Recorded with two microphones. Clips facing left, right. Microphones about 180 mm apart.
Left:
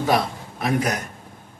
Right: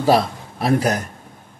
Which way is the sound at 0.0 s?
30° right (ahead or behind).